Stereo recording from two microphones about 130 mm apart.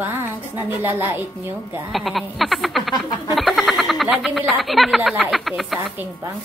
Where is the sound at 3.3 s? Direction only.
Centre (ahead or behind).